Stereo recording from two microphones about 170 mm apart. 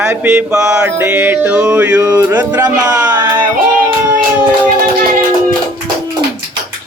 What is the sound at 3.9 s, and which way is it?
Music, 25° right (ahead or behind).